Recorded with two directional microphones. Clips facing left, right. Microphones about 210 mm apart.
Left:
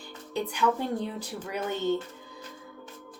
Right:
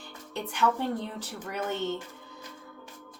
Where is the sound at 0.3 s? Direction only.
10° left (ahead or behind).